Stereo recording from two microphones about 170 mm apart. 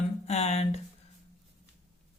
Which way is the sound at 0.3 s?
40° left (ahead or behind).